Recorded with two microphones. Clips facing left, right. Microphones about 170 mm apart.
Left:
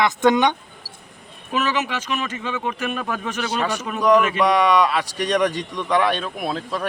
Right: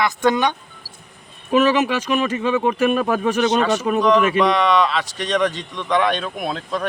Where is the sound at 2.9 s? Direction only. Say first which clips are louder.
Right 8 dB; 45° right (ahead or behind).